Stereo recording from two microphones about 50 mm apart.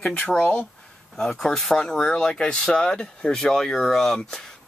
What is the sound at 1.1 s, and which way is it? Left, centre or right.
Speech, centre.